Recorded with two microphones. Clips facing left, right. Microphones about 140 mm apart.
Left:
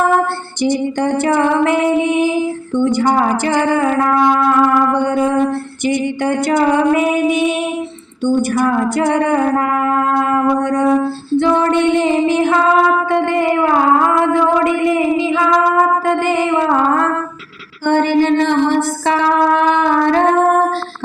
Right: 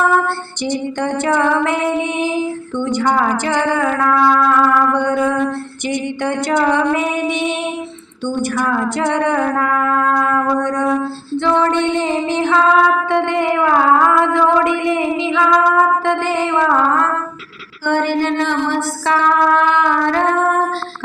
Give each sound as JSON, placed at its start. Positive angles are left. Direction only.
{"t": 0.6, "sound": "music", "side_deg": 10}
{"t": 4.1, "sound": "music", "side_deg": 25}
{"t": 4.4, "sound": "music", "side_deg": 15}
{"t": 9.0, "sound": "music", "side_deg": 10}
{"t": 12.5, "sound": "a sound", "side_deg": 5}
{"t": 16.2, "sound": "music", "side_deg": 10}
{"t": 17.8, "sound": "music", "side_deg": 20}
{"t": 19.2, "sound": "music", "side_deg": 30}
{"t": 20.1, "sound": "female singing", "side_deg": 20}